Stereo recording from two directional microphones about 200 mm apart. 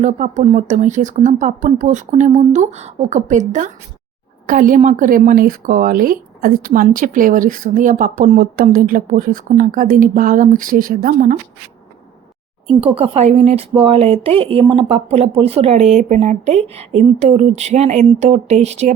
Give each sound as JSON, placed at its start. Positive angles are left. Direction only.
{"t": 0.0, "sound": "a woman's voice", "side_deg": -35}
{"t": 12.6, "sound": "speech", "side_deg": -30}